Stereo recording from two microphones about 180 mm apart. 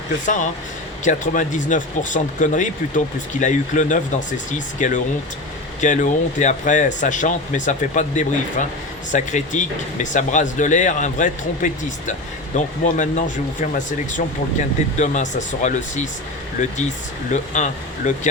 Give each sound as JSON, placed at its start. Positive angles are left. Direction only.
{"t": 0.3, "sound": "speech", "side_deg": 45}